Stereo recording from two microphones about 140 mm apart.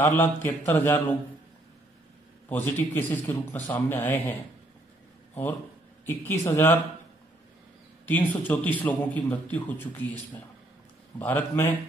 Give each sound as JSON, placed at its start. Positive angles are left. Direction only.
{"t": 0.0, "sound": "a man's voice", "side_deg": 20}
{"t": 2.5, "sound": "a man's voice", "side_deg": 15}
{"t": 6.0, "sound": "a man's voice", "side_deg": 15}
{"t": 8.0, "sound": "a man's voice", "side_deg": 15}
{"t": 11.1, "sound": "a man's voice", "side_deg": 15}